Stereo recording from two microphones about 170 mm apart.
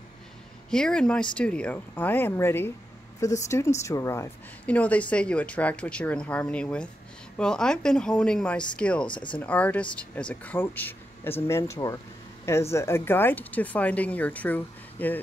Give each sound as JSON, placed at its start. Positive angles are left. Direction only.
{"t": 0.7, "sound": "a woman's voice", "side_deg": 5}
{"t": 9.0, "sound": "speech", "side_deg": 30}
{"t": 9.3, "sound": "a woman's voice", "side_deg": 10}